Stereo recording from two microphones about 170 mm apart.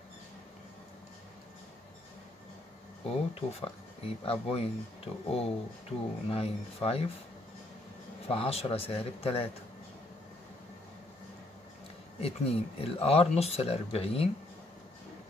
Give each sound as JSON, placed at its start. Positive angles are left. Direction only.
{"t": 3.3, "sound": "speech", "side_deg": 35}
{"t": 8.3, "sound": "speech", "side_deg": 35}
{"t": 12.2, "sound": "speech", "side_deg": 35}